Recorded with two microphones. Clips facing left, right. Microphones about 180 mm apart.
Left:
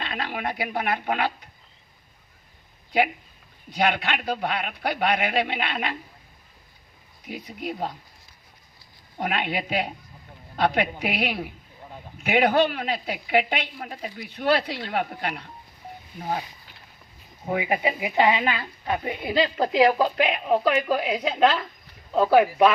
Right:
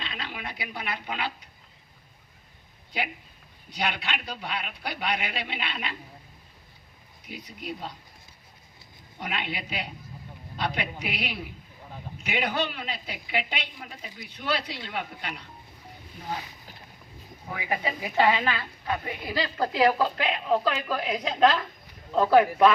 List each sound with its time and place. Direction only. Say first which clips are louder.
0.0 s a man's voice: left 7 dB; 55° left (ahead or behind)
3.7 s a man's voice: left 7 dB; 55° left (ahead or behind)
7.3 s a man's voice: left 5 dB; 55° left (ahead or behind)
9.1 s a man's voice: left 7 dB; 50° left (ahead or behind)
17.4 s a woman's voice: left 6 dB; 25° left (ahead or behind)